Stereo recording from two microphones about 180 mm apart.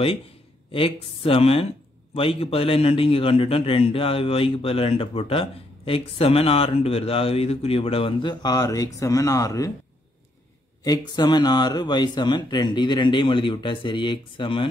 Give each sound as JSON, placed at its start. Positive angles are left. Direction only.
{"t": 0.7, "sound": "a man's voice", "side_deg": 30}
{"t": 10.8, "sound": "speech", "side_deg": 20}